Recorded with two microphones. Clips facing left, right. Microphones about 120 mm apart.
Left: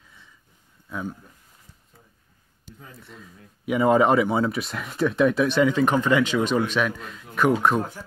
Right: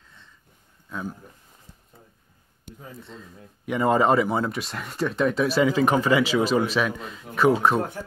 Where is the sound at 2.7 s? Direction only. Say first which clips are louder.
Right 3 dB; 55° right (ahead or behind).